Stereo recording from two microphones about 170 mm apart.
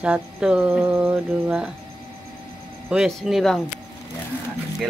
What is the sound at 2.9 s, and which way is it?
Speech, centre (ahead or behind).